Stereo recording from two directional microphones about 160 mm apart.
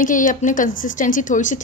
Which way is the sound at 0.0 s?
55° left (ahead or behind).